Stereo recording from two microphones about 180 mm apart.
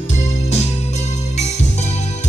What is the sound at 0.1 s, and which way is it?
Music, 40° left (ahead or behind).